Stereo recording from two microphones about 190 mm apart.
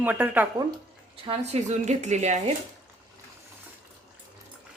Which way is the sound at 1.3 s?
35° right (ahead or behind).